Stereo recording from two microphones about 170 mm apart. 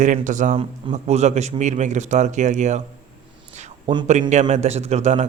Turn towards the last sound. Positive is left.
turn(degrees=-40)  # may be behind; listen again after turning